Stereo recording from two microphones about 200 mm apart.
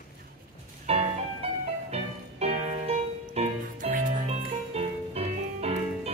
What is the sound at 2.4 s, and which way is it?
Music, 30° right (ahead or behind).